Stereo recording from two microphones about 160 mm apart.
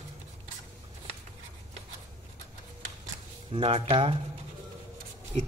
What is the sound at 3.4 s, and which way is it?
Speech, 35° right (ahead or behind).